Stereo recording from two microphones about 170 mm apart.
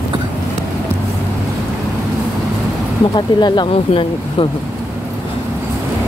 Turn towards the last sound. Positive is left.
turn(degrees=25)  # may be behind; listen again after turning